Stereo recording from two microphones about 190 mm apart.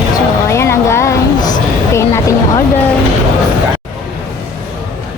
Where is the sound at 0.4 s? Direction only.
15° left (ahead or behind).